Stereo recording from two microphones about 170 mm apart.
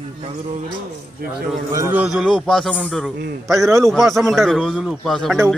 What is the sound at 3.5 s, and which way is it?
Speech, 15° right (ahead or behind).